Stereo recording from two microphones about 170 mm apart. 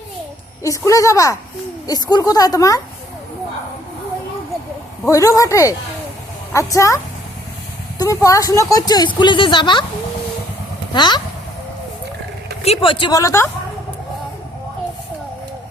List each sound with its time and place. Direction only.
0.6 s speech: 20° left (ahead or behind)
5.0 s a woman's voice: 20° left (ahead or behind)
10.9 s speech: 25° left (ahead or behind)
12.6 s speech: 35° left (ahead or behind)
13.1 s a woman's voice: 15° left (ahead or behind)